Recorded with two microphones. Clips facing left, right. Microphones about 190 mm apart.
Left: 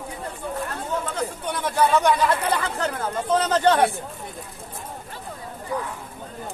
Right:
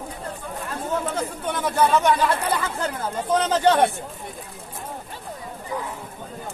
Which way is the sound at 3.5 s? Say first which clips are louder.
Right 1 dB; 15° right (ahead or behind).